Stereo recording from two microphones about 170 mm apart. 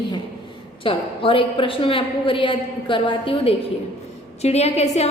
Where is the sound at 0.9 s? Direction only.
30° left (ahead or behind).